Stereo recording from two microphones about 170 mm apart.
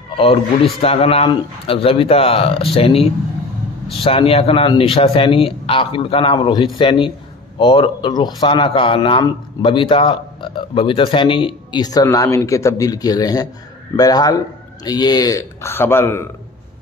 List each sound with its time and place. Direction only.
0.2 s a man's voice: 35° left (ahead or behind); by 16.3 s 15° left (ahead or behind)